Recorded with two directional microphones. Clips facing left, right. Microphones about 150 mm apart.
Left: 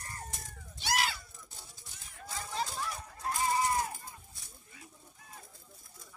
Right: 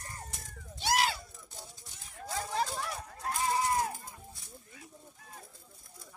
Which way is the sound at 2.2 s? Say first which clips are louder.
Right 4 dB; 50° right (ahead or behind).